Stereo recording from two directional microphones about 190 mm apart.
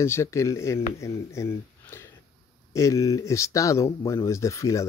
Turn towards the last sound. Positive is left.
turn(degrees=15)  # may be behind; listen again after turning